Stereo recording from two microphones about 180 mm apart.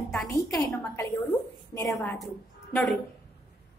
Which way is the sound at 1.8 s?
Centre (ahead or behind).